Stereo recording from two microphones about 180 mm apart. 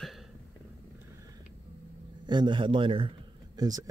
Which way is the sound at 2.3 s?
25° right (ahead or behind).